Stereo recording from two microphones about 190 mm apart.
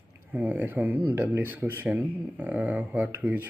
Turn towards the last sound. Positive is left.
turn(degrees=-10)  # may be behind; listen again after turning